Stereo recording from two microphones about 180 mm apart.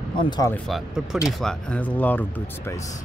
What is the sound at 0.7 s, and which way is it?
Speech, centre (ahead or behind).